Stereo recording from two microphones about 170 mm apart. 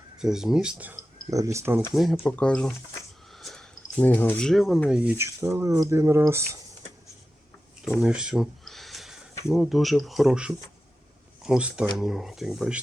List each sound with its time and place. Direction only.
0.2 s speech: 5° right (ahead or behind)
1.3 s speech: 20° right (ahead or behind)
1.9 s speech: centre (ahead or behind)
3.3 s a sound: centre (ahead or behind)
4.9 s speech: 5° right (ahead or behind)
7.9 s a sound: 5° right (ahead or behind)
9.5 s speech: centre (ahead or behind)